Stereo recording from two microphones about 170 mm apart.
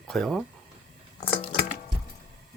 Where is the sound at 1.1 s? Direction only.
35° left (ahead or behind).